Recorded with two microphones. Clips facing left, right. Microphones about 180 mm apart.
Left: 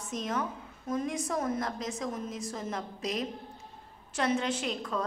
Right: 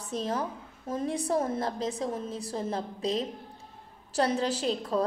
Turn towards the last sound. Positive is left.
turn(degrees=-35)  # may be behind; listen again after turning